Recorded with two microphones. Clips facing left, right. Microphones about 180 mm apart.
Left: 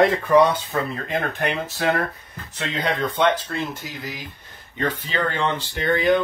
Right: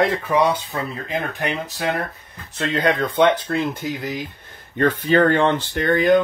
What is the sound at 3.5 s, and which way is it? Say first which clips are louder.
Speech: right 6 dB; 55° right (ahead or behind).